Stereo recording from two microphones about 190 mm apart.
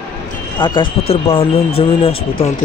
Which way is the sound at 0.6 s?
25° left (ahead or behind).